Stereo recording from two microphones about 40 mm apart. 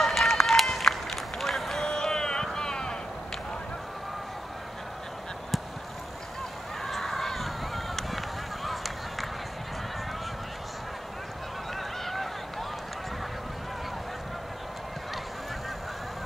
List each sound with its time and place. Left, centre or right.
0.0 s run: centre
1.9 s a sound: centre
2.4 s boat: centre
6.8 s run: centre
12.0 s honk: centre